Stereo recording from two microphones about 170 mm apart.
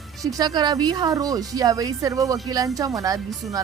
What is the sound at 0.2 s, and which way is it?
Speech, 20° right (ahead or behind).